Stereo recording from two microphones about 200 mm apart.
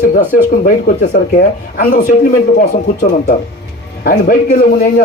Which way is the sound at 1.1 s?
50° left (ahead or behind).